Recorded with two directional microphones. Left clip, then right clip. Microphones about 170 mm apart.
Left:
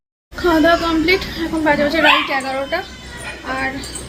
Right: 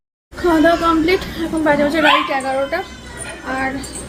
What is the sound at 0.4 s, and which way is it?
A woman's voice, centre (ahead or behind).